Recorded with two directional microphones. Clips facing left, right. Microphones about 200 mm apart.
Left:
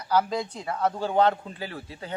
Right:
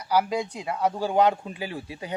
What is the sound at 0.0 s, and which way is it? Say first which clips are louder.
Speech: right 1 dB; 10° right (ahead or behind).